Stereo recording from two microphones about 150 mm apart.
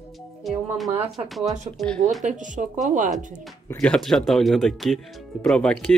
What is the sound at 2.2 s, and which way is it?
Speech, 55° right (ahead or behind).